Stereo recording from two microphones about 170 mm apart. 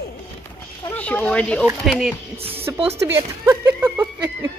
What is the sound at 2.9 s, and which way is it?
Speech, 15° right (ahead or behind).